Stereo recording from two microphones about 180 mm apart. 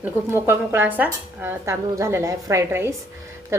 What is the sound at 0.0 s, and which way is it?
A woman's voice, 15° right (ahead or behind).